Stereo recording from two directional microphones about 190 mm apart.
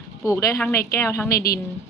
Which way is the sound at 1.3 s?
55° left (ahead or behind).